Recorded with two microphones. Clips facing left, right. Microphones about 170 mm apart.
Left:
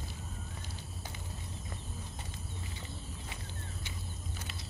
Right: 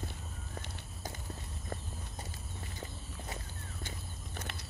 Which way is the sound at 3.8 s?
60° right (ahead or behind).